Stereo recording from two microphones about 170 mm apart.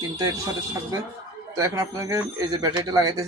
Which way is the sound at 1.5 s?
20° right (ahead or behind).